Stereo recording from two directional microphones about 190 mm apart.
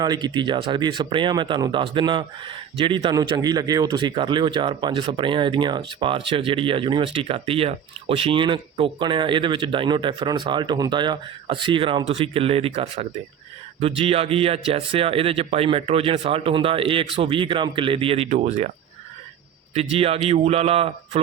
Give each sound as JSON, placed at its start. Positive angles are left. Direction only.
{"t": 0.0, "sound": "a man's voice", "side_deg": -20}
{"t": 19.7, "sound": "a man's voice", "side_deg": -30}